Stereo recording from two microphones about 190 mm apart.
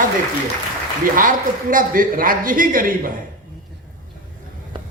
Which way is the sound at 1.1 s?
45° right (ahead or behind).